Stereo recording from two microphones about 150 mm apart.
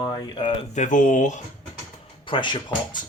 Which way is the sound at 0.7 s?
55° left (ahead or behind).